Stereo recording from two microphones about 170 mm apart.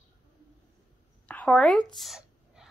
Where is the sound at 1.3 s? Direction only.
10° left (ahead or behind).